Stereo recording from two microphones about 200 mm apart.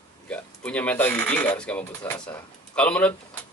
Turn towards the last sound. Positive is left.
turn(degrees=5)  # may be behind; listen again after turning